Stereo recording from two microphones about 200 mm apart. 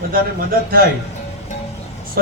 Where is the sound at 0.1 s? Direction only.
45° right (ahead or behind).